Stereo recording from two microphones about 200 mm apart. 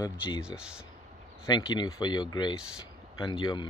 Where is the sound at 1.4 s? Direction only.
20° left (ahead or behind).